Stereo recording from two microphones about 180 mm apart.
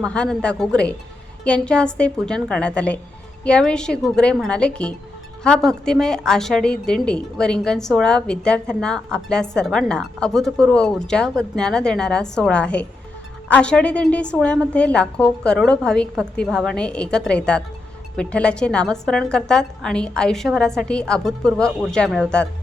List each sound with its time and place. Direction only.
0.0 s a woman's voice: 5° left (ahead or behind)